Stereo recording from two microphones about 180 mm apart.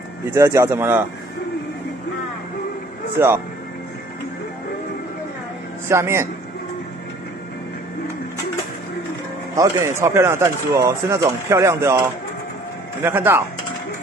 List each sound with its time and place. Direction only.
0.2 s speech: 15° right (ahead or behind)
3.2 s speech: 15° right (ahead or behind)
5.9 s speech: 15° right (ahead or behind)
9.6 s speech: 15° right (ahead or behind)